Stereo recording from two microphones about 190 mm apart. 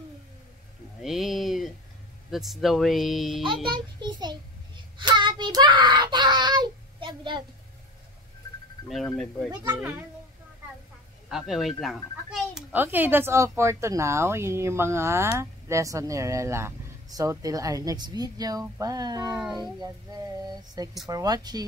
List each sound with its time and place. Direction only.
1.0 s a sound: centre (ahead or behind)
2.3 s speech: centre (ahead or behind)
3.7 s a child's voice: 25° right (ahead or behind)
4.9 s child singing: 25° right (ahead or behind)
8.8 s speech: centre (ahead or behind)
9.8 s speech: 10° right (ahead or behind)
11.2 s speech: centre (ahead or behind); by 19.4 s 20° right (ahead or behind)
19.5 s music: 20° right (ahead or behind)